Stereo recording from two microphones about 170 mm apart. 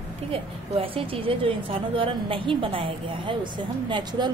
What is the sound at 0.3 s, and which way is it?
A woman's voice, 30° right (ahead or behind).